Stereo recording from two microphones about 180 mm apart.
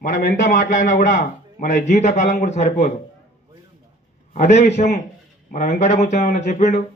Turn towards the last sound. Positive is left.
turn(degrees=40)  # may be behind; listen again after turning